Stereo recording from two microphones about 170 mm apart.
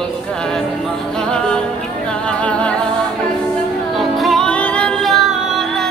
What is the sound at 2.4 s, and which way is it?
Music, 5° left (ahead or behind).